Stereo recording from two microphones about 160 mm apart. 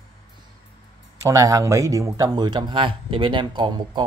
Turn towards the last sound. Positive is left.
turn(degrees=-30)  # may be behind; listen again after turning